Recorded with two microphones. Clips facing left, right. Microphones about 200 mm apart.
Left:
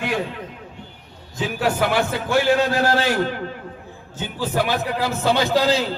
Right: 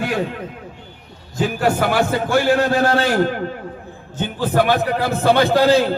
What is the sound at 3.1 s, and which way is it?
A man's voice, 50° right (ahead or behind).